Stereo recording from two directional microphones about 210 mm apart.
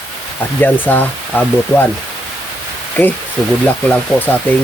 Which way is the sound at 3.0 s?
10° left (ahead or behind).